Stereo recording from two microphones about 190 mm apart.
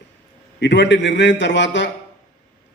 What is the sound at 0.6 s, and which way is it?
A man's voice, 70° left (ahead or behind).